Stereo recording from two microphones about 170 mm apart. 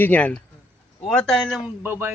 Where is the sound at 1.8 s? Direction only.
10° right (ahead or behind).